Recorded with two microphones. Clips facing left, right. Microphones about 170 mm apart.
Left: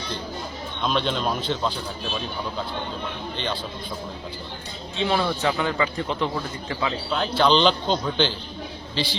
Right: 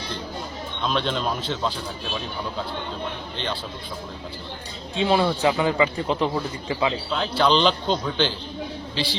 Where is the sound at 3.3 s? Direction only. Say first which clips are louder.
Left 1 dB; centre (ahead or behind).